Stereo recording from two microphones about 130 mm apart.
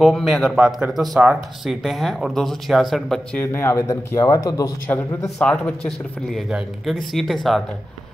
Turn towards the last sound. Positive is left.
turn(degrees=0)  # may be behind; listen again after turning